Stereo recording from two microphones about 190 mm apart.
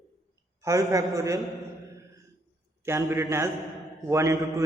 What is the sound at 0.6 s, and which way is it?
Speech, 15° right (ahead or behind).